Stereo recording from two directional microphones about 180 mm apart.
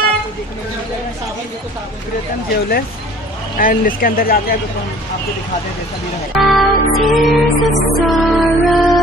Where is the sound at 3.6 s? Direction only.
50° left (ahead or behind).